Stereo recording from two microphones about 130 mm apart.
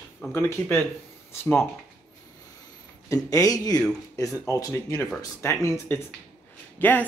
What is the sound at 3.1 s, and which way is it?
Speech, 25° left (ahead or behind).